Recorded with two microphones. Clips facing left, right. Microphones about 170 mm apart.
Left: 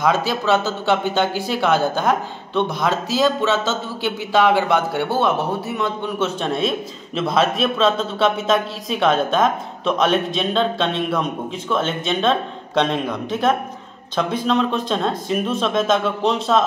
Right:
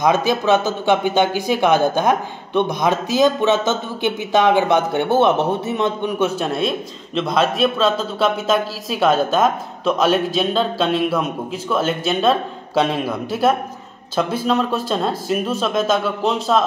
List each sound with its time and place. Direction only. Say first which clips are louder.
0.0 s a man's voice: right 3 dB; 15° right (ahead or behind); by 16.6 s centre (ahead or behind)